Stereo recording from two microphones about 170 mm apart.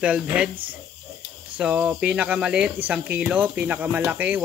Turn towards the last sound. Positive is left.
turn(degrees=-10)  # may be behind; listen again after turning